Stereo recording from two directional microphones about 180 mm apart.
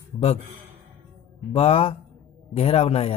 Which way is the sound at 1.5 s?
30° left (ahead or behind).